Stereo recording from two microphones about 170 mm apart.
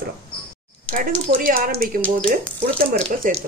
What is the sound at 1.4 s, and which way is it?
Speech, 55° right (ahead or behind).